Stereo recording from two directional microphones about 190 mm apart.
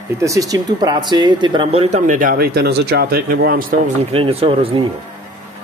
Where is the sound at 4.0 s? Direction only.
30° right (ahead or behind).